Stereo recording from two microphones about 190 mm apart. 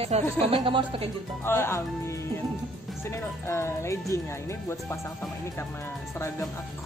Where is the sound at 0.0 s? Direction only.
30° right (ahead or behind).